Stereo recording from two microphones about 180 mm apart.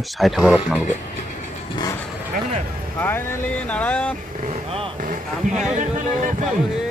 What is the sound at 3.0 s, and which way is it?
Vehicle, 10° left (ahead or behind).